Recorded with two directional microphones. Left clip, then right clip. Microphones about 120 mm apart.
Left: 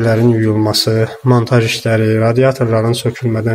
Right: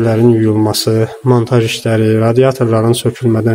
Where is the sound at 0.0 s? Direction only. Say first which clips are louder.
Right 2 dB; 15° right (ahead or behind).